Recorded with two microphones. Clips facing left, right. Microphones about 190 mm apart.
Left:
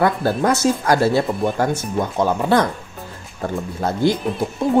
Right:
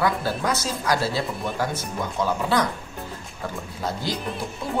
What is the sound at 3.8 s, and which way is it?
Speech, 55° left (ahead or behind).